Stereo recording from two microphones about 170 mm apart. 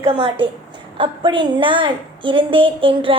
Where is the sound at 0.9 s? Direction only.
30° right (ahead or behind).